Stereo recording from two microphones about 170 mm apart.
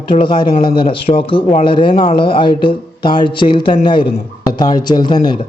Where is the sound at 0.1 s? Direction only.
30° left (ahead or behind).